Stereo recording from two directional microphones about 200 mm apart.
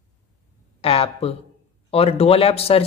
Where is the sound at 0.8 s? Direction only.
30° left (ahead or behind).